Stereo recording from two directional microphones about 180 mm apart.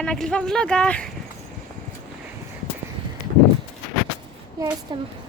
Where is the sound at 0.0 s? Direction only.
5° left (ahead or behind).